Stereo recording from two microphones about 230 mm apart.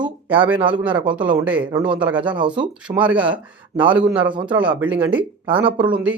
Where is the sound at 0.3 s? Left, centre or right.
Centre.